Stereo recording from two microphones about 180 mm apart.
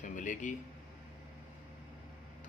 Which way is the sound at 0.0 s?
45° left (ahead or behind).